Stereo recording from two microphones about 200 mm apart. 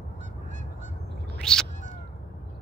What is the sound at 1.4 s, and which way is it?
Cat, 5° left (ahead or behind).